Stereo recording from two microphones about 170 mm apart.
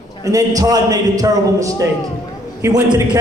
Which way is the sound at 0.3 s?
20° right (ahead or behind).